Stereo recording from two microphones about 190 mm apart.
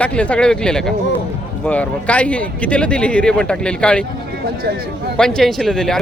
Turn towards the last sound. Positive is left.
turn(degrees=0)  # may be behind; listen again after turning